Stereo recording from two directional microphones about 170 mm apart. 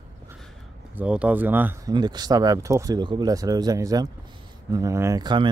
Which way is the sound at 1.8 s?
25° right (ahead or behind).